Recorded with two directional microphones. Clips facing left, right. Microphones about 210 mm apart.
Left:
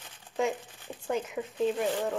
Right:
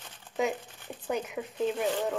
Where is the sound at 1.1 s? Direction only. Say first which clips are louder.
Left 1 dB; 5° right (ahead or behind).